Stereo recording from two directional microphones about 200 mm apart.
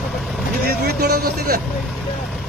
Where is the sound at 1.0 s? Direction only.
50° right (ahead or behind).